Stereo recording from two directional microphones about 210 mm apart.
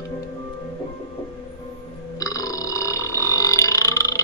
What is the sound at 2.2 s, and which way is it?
Burping, 15° left (ahead or behind).